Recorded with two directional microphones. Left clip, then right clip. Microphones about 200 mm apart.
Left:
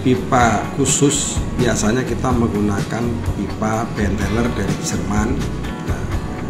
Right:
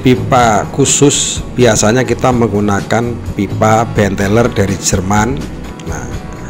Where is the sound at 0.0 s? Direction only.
40° right (ahead or behind).